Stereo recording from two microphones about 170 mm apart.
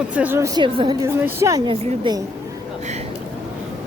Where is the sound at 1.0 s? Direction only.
15° right (ahead or behind).